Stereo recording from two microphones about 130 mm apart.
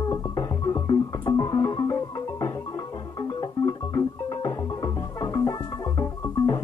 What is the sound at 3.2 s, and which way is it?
Music, 30° left (ahead or behind).